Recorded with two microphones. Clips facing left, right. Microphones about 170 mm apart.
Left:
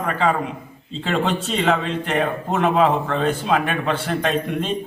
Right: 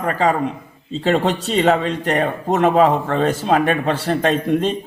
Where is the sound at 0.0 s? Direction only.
40° right (ahead or behind).